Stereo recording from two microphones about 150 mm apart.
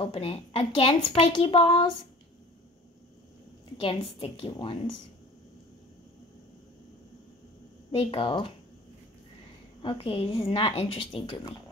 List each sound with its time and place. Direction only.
0.0 s a woman's voice: 40° left (ahead or behind)
3.8 s a woman's voice: 35° left (ahead or behind)
8.0 s a woman's voice: 35° left (ahead or behind)
9.8 s a woman's voice: 35° left (ahead or behind)